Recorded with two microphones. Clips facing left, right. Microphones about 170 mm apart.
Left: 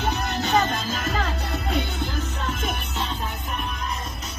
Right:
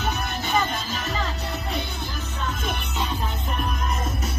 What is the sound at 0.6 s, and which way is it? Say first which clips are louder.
Music: left 1 dB; 50° left (ahead or behind).